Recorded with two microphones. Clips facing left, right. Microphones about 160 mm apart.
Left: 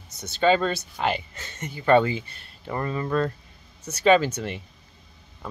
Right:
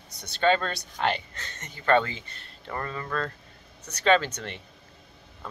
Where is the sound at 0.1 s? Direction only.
Centre (ahead or behind).